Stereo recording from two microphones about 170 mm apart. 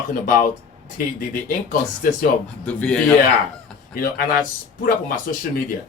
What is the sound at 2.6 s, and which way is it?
Speech, 5° left (ahead or behind).